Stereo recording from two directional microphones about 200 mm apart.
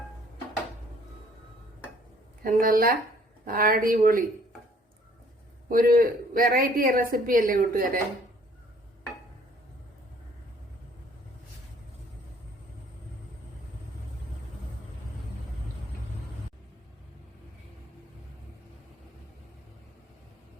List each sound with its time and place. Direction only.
2.4 s a woman's voice: 45° right (ahead or behind)
5.6 s a woman's voice: 45° right (ahead or behind)